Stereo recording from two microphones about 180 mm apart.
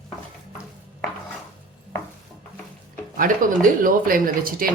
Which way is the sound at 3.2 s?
50° right (ahead or behind).